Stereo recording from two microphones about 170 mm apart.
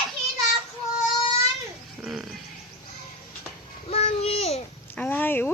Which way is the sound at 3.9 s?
35° left (ahead or behind).